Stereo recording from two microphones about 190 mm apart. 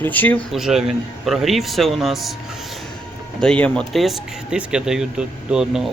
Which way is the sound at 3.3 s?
5° left (ahead or behind).